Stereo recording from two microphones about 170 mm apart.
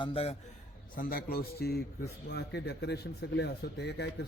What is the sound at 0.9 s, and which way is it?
Speech, 65° left (ahead or behind).